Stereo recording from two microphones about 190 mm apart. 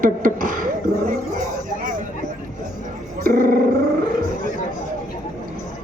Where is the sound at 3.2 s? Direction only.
45° right (ahead or behind).